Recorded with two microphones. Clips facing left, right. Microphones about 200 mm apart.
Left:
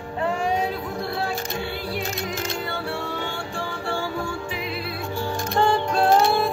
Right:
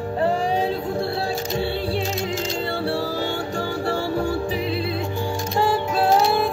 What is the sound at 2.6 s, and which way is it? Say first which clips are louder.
Music: right 5 dB; 30° right (ahead or behind).